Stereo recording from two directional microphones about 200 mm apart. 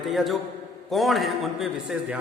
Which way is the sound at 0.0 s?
Centre (ahead or behind).